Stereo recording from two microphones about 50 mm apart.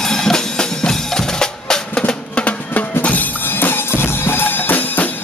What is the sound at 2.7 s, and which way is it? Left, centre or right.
Music, left.